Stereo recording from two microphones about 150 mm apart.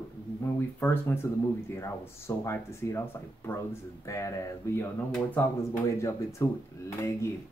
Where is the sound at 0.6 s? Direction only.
15° left (ahead or behind).